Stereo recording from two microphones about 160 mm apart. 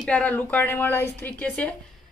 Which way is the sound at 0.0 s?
10° left (ahead or behind).